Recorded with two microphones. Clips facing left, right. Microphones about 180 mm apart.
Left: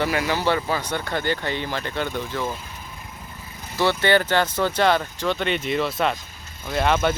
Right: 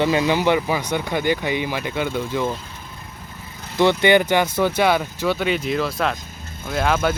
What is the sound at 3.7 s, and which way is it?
Speech, 15° right (ahead or behind).